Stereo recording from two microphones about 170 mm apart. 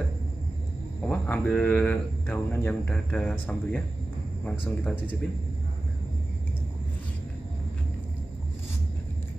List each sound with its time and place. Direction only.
1.0 s speech: 5° left (ahead or behind)